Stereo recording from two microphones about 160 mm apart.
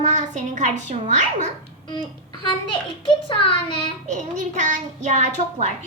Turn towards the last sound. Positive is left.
turn(degrees=-45)  # may be behind; listen again after turning